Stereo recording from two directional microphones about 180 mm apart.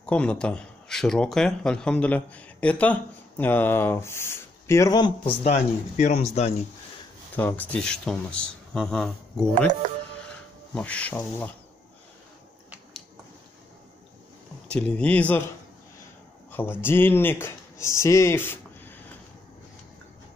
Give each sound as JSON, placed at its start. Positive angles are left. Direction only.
{"t": 0.0, "sound": "speech", "side_deg": 5}
{"t": 7.3, "sound": "speech", "side_deg": 10}
{"t": 9.7, "sound": "speech", "side_deg": -40}
{"t": 10.3, "sound": "speech", "side_deg": 5}
{"t": 12.6, "sound": "a sound", "side_deg": -5}
{"t": 14.7, "sound": "speech", "side_deg": 5}
{"t": 16.8, "sound": "speech", "side_deg": 10}